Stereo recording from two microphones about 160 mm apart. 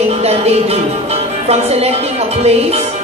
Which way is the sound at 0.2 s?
40° right (ahead or behind).